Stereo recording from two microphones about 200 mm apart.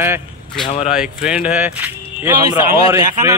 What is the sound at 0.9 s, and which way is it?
A man's voice, 5° right (ahead or behind).